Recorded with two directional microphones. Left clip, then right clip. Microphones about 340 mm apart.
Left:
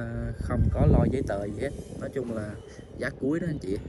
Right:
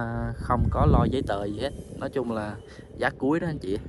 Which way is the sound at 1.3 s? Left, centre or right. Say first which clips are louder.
Right 2 dB; right.